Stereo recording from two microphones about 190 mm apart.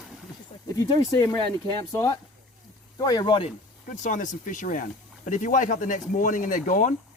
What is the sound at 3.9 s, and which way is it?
Speech, 40° left (ahead or behind).